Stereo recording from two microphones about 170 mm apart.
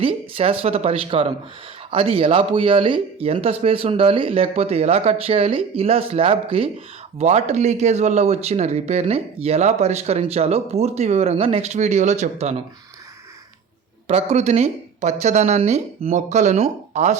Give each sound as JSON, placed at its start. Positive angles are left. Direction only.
{"t": 0.0, "sound": "speech", "side_deg": -35}
{"t": 14.1, "sound": "speech", "side_deg": -40}